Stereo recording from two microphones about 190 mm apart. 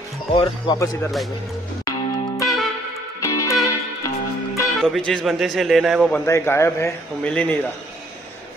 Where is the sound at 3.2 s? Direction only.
15° left (ahead or behind).